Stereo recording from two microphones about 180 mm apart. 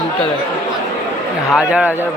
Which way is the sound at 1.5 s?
5° right (ahead or behind).